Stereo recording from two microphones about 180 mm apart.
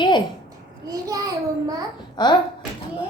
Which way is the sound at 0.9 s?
20° right (ahead or behind).